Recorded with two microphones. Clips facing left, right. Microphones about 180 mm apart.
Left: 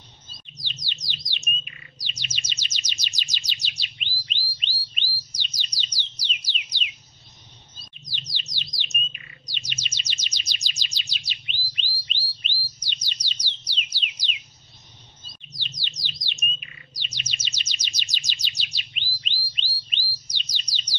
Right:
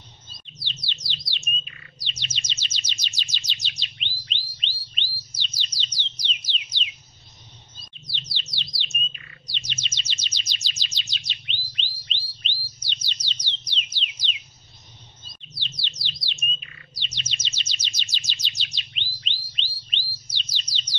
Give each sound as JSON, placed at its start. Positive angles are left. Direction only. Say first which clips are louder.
{"t": 1.0, "sound": "bird", "louder": "even", "side_deg": 15}
{"t": 2.0, "sound": "chirp", "louder": "right 1 dB", "side_deg": 10}
{"t": 8.0, "sound": "bird", "louder": "right 1 dB", "side_deg": 15}
{"t": 13.9, "sound": "a sound", "louder": "right 1 dB", "side_deg": 10}
{"t": 15.4, "sound": "bird", "louder": "right 1 dB", "side_deg": 15}